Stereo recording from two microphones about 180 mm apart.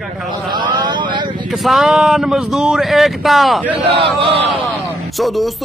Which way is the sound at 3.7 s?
30° right (ahead or behind).